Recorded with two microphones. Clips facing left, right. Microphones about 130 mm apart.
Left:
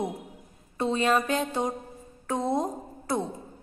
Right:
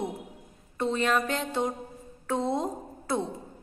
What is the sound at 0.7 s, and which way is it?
Speech, 15° left (ahead or behind).